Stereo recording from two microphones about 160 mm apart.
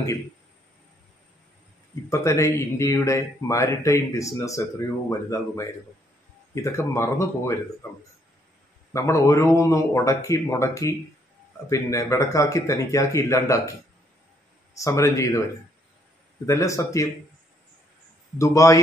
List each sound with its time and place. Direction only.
2.0 s speech: 20° left (ahead or behind)
6.5 s speech: 15° left (ahead or behind)
8.9 s speech: 20° left (ahead or behind)
14.7 s speech: 20° left (ahead or behind)
16.4 s speech: 20° left (ahead or behind)
18.4 s speech: 20° left (ahead or behind)